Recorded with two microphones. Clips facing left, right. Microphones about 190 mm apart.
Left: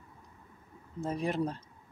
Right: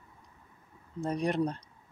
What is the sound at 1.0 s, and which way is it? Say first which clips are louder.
Speech: right 2 dB; 5° left (ahead or behind).